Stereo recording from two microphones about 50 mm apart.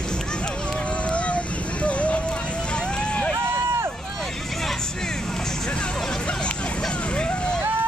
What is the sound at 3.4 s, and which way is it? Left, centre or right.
Run, right.